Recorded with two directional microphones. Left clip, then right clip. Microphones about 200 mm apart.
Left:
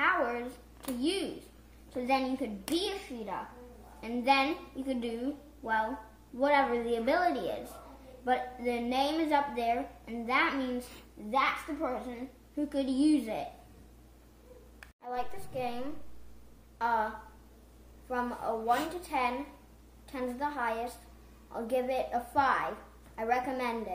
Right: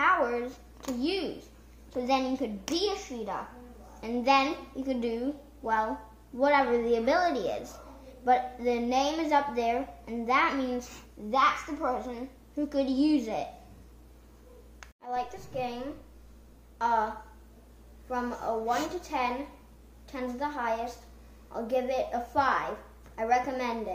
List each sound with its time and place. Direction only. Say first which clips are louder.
0.0 s a sound: right 4 dB; 20° right (ahead or behind)
1.9 s a child's voice: right 2 dB; 15° right (ahead or behind)
4.0 s a woman's voice: right 3 dB; 20° right (ahead or behind)
15.0 s a woman's voice: right 3 dB; centre (ahead or behind)